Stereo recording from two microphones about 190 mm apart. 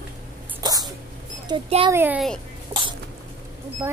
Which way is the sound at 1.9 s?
10° right (ahead or behind).